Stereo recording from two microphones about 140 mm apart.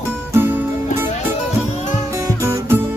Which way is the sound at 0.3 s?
15° right (ahead or behind).